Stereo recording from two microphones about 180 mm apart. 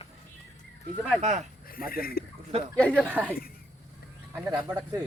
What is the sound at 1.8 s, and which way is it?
Speech, 55° left (ahead or behind).